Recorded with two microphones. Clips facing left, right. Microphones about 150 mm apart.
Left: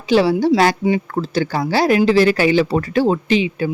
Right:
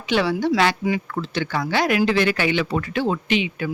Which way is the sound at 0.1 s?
35° left (ahead or behind).